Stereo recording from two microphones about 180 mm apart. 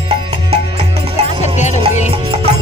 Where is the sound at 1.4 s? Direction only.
40° left (ahead or behind).